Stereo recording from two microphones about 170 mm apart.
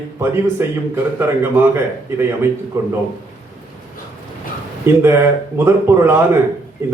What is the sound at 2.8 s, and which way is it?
Speech, 15° right (ahead or behind).